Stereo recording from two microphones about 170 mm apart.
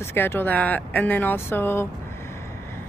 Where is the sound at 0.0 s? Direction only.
15° left (ahead or behind).